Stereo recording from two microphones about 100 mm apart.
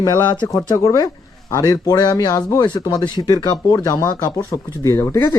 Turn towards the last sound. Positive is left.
turn(degrees=25)  # may be behind; listen again after turning